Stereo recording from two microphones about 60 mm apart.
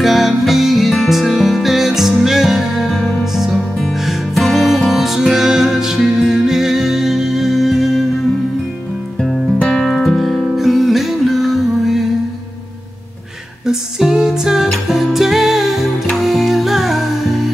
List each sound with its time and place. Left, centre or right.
0.0 s music: centre
9.6 s music: centre
9.8 s music: centre
13.7 s music: centre